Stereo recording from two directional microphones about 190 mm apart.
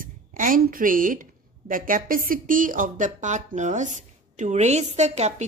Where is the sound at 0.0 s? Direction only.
45° right (ahead or behind).